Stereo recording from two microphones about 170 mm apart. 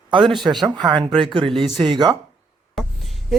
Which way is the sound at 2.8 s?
Centre (ahead or behind).